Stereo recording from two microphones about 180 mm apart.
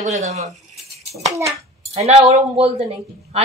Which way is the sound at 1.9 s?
35° right (ahead or behind).